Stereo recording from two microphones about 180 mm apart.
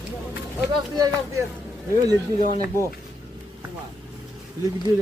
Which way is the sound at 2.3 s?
35° left (ahead or behind).